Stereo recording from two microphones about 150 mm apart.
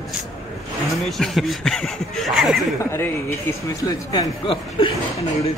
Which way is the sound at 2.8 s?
20° left (ahead or behind).